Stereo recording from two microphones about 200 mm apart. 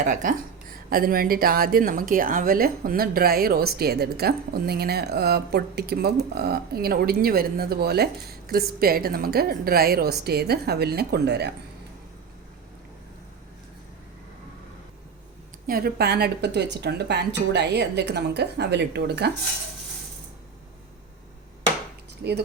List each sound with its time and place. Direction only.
0.0 s speech: 40° right (ahead or behind); by 11.5 s 55° right (ahead or behind)
15.6 s speech: 50° right (ahead or behind)